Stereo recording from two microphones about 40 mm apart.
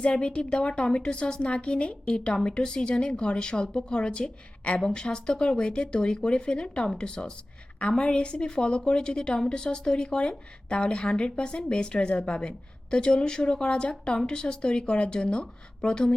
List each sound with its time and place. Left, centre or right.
0.0 s speech: left